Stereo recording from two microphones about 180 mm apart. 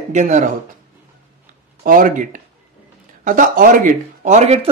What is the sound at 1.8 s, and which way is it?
Speech, 50° right (ahead or behind).